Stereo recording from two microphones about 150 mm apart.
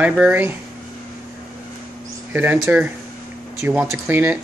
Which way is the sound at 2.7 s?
10° right (ahead or behind).